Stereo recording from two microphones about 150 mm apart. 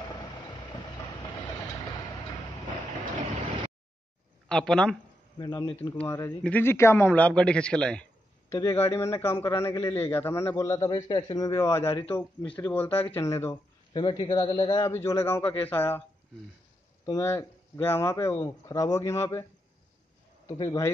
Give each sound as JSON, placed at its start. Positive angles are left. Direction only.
{"t": 4.5, "sound": "speech", "side_deg": 5}
{"t": 5.4, "sound": "a man's voice", "side_deg": 25}
{"t": 5.8, "sound": "a man's voice", "side_deg": 15}
{"t": 8.5, "sound": "a man's voice", "side_deg": 20}
{"t": 13.9, "sound": "a man's voice", "side_deg": 30}
{"t": 14.9, "sound": "a man's voice", "side_deg": 15}
{"t": 17.0, "sound": "a man's voice", "side_deg": 20}
{"t": 20.5, "sound": "a man's voice", "side_deg": 25}